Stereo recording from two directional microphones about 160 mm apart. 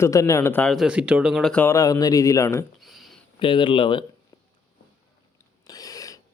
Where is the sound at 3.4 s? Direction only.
30° left (ahead or behind).